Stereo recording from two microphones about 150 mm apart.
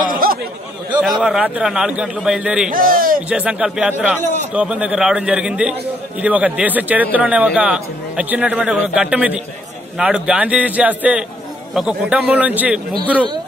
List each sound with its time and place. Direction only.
0.0 s chatter: 70° right (ahead or behind)
0.9 s a man's voice: centre (ahead or behind)
2.7 s a man's voice: 70° right (ahead or behind)
3.3 s a man's voice: 10° right (ahead or behind)